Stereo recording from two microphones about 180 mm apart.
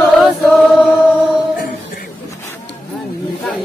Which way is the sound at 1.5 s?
50° left (ahead or behind).